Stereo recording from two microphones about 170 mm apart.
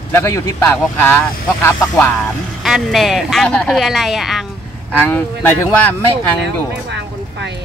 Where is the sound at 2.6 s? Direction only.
Centre (ahead or behind).